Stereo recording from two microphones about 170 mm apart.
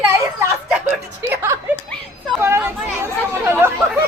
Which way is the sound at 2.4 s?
15° right (ahead or behind).